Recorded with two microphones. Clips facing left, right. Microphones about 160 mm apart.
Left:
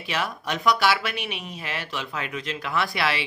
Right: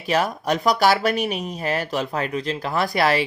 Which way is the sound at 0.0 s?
40° right (ahead or behind).